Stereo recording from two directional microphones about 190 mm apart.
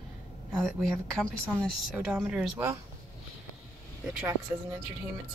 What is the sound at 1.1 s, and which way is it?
A woman's voice, centre (ahead or behind).